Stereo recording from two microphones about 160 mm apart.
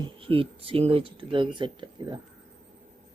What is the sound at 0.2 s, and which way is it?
Speech, 35° right (ahead or behind).